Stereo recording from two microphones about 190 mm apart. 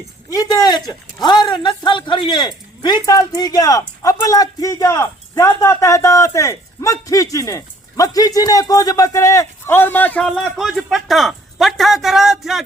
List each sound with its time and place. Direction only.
0.3 s speech: 20° left (ahead or behind); by 12.6 s centre (ahead or behind)